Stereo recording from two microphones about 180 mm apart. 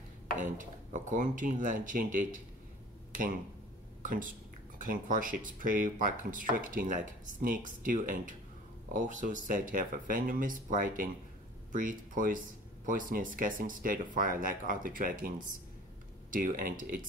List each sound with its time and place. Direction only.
0.6 s speech: 45° right (ahead or behind)
3.1 s a sound: 50° right (ahead or behind)
4.0 s speech: 45° right (ahead or behind)